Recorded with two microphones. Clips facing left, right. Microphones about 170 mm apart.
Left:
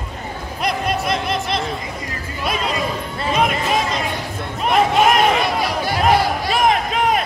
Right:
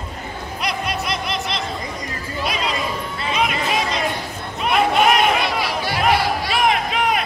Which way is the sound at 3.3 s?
45° left (ahead or behind).